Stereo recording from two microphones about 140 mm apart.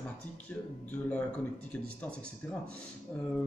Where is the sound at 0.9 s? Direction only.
10° left (ahead or behind).